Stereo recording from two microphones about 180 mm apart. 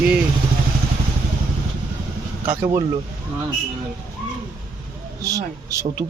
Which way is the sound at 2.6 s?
30° right (ahead or behind).